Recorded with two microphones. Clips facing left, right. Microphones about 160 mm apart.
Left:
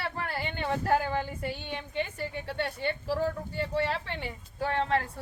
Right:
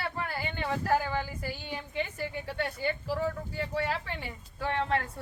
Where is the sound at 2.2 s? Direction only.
30° left (ahead or behind).